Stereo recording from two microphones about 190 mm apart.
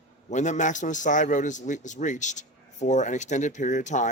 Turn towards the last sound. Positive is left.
turn(degrees=40)  # may be behind; listen again after turning